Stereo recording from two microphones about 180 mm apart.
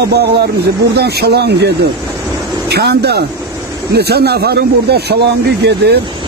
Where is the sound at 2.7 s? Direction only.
65° right (ahead or behind).